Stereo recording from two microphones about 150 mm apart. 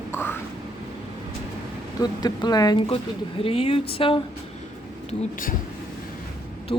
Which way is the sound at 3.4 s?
40° left (ahead or behind).